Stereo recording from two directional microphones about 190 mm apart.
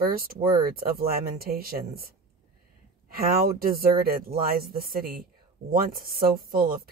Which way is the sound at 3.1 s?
50° right (ahead or behind).